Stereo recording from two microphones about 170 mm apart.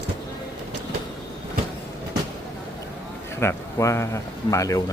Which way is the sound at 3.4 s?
15° left (ahead or behind).